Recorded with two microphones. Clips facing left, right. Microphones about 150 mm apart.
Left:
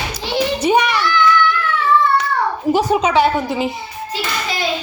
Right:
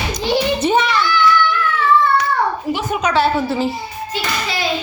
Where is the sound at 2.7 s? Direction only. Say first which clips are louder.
Left 5 dB; 35° left (ahead or behind); by 3.7 s 20° left (ahead or behind).